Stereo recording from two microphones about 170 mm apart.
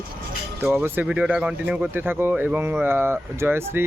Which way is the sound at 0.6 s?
10° right (ahead or behind).